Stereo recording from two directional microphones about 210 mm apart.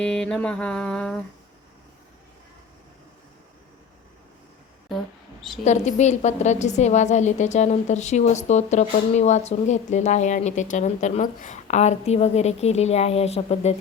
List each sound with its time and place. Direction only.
0.0 s mantra: 5° left (ahead or behind)
5.6 s a woman's voice: 35° left (ahead or behind)